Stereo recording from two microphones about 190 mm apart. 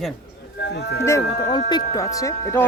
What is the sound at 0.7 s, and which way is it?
Speech, 60° left (ahead or behind).